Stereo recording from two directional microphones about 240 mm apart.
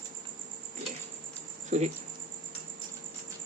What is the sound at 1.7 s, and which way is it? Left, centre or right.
Speech, right.